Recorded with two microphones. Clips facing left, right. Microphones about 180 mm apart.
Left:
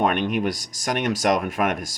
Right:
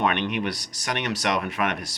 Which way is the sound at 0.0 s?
45° left (ahead or behind).